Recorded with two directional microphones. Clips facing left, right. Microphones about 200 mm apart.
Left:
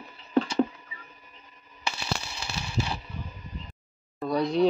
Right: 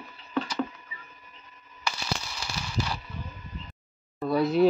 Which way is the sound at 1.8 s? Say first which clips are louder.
Even; 25° left (ahead or behind).